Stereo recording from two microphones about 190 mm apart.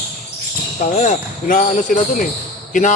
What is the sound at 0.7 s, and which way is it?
Speech, 40° left (ahead or behind).